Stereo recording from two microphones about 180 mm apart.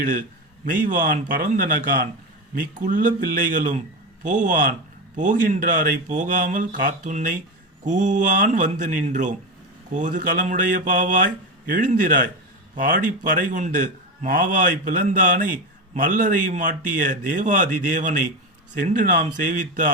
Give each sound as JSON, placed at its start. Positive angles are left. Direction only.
{"t": 0.0, "sound": "a man's voice", "side_deg": -50}